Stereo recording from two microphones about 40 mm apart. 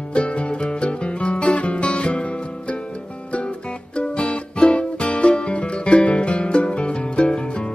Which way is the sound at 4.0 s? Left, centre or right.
Left.